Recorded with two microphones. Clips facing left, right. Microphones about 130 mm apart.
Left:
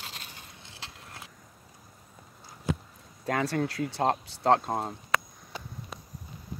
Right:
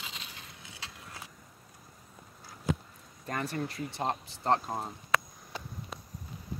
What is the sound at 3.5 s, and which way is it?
Speech, 90° left.